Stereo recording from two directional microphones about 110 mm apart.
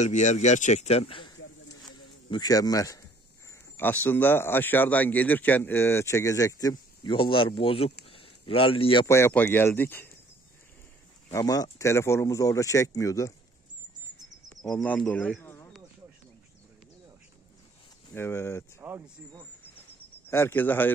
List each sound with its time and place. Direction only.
0.0 s a man's voice: 90° left; by 1.3 s 55° left (ahead or behind)
2.2 s speech: 40° left (ahead or behind)
3.7 s speech: 15° left (ahead or behind); by 9.0 s 60° left (ahead or behind)
9.0 s speech: 25° left (ahead or behind)
11.3 s speech: 35° left (ahead or behind)
14.6 s speech: 10° left (ahead or behind)
18.1 s speech: 20° left (ahead or behind)
18.8 s a sound: 20° right (ahead or behind)
20.2 s speech: 20° left (ahead or behind)